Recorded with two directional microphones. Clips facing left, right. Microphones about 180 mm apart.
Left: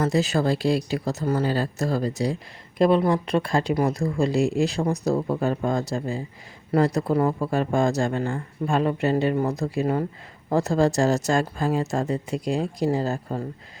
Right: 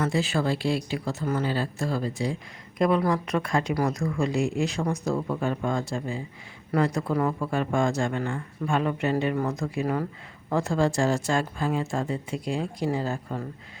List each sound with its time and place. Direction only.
0.0 s speech: 40° left (ahead or behind)
10.5 s speech: 40° left (ahead or behind)